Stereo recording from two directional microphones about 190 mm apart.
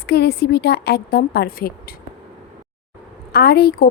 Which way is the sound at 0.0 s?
55° left (ahead or behind).